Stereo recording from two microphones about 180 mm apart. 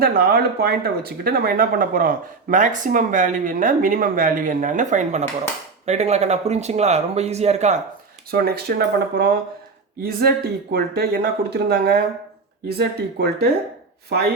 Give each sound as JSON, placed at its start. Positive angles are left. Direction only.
{"t": 0.0, "sound": "speech", "side_deg": -60}
{"t": 8.3, "sound": "speech", "side_deg": -60}